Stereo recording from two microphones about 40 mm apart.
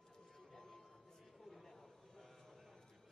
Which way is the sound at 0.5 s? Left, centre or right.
Centre.